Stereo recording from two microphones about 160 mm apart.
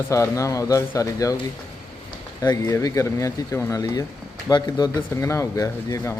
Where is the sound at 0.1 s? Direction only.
20° left (ahead or behind).